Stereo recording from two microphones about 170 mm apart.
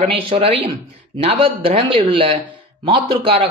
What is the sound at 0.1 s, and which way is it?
Speech, 35° right (ahead or behind).